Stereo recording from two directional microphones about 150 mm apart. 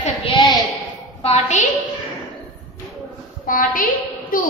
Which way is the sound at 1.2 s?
45° left (ahead or behind).